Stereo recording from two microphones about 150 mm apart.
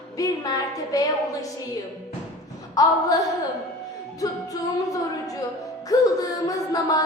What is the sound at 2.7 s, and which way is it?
Music, 25° left (ahead or behind).